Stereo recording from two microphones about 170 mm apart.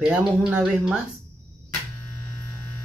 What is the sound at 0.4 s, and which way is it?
Speech, 5° right (ahead or behind).